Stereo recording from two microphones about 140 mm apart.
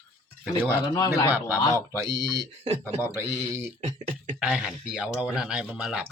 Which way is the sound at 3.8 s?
50° right (ahead or behind).